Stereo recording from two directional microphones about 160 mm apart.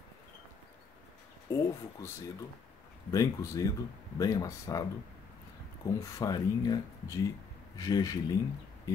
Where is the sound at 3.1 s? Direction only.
20° left (ahead or behind).